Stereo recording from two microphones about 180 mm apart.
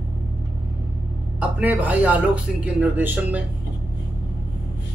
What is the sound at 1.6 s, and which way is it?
A man's voice, 10° right (ahead or behind).